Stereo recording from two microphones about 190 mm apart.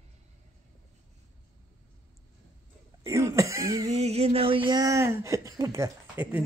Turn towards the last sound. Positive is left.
turn(degrees=-10)  # may be behind; listen again after turning